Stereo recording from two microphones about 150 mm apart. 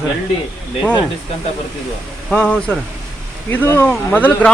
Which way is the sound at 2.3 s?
5° left (ahead or behind).